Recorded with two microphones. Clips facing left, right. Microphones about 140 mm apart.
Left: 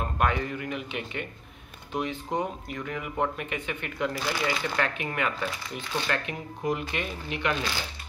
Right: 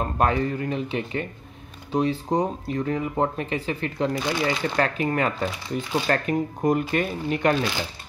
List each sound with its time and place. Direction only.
0.0 s speech: 35° right (ahead or behind)
4.7 s speech: 35° right (ahead or behind)